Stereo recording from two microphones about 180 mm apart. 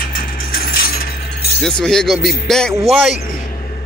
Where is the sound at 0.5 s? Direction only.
55° left (ahead or behind).